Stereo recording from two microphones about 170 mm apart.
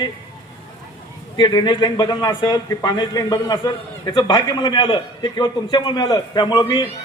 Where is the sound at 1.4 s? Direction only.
25° left (ahead or behind).